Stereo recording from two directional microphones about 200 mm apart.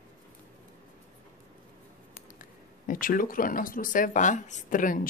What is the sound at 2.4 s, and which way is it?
Speech, 45° left (ahead or behind).